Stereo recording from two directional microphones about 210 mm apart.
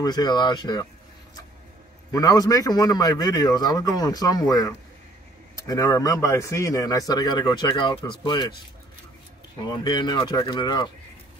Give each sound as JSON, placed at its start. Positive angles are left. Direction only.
{"t": 0.0, "sound": "speech", "side_deg": 20}
{"t": 2.1, "sound": "a man's voice", "side_deg": 15}
{"t": 9.7, "sound": "speech", "side_deg": 20}